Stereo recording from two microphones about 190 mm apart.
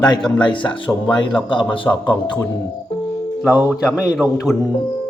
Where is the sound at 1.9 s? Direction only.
10° left (ahead or behind).